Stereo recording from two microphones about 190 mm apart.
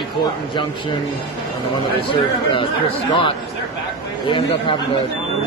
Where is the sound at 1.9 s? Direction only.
25° left (ahead or behind).